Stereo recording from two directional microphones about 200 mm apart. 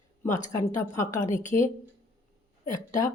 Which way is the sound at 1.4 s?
35° left (ahead or behind).